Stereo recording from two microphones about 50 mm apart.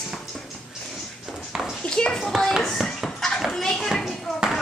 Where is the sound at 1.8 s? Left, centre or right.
Centre.